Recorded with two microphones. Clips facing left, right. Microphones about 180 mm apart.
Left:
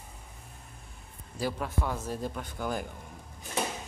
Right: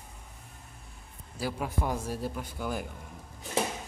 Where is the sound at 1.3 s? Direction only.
10° right (ahead or behind).